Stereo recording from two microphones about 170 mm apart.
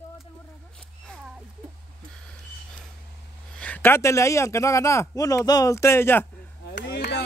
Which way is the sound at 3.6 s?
10° left (ahead or behind).